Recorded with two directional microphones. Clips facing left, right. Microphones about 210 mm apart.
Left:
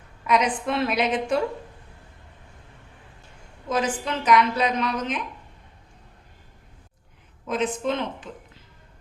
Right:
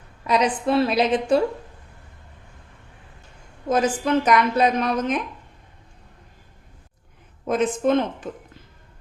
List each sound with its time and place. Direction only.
0.3 s a woman's voice: 35° right (ahead or behind)
3.7 s a woman's voice: 50° right (ahead or behind)
7.4 s a woman's voice: 45° right (ahead or behind)